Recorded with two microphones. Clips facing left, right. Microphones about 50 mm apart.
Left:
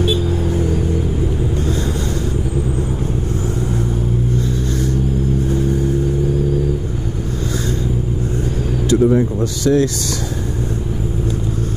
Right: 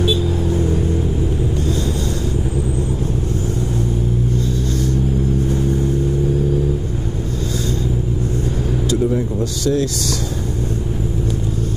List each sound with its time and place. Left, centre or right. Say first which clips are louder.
0.0 s vehicle: even; left
9.0 s speech: left 4 dB; left